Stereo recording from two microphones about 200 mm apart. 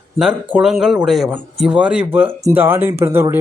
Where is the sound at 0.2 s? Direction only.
10° right (ahead or behind).